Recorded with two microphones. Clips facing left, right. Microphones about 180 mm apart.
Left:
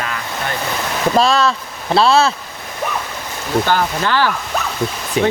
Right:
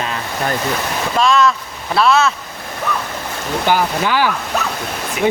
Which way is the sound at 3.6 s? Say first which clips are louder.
Right 5 dB; 10° right (ahead or behind).